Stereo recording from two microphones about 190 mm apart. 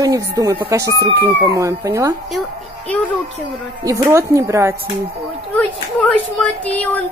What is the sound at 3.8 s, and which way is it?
Speech, 15° right (ahead or behind).